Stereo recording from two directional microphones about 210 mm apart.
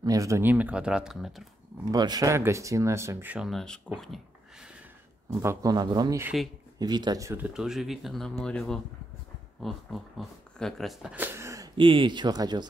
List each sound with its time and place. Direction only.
0.0 s speech: 15° right (ahead or behind)
1.9 s speech: 20° right (ahead or behind); by 4.2 s 5° left (ahead or behind)
5.4 s speech: 15° right (ahead or behind)